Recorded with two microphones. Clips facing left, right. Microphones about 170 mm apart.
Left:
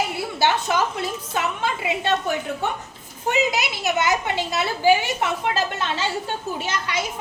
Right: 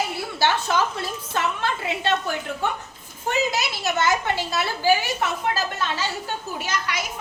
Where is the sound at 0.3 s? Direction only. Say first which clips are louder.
Left 1 dB; 15° left (ahead or behind).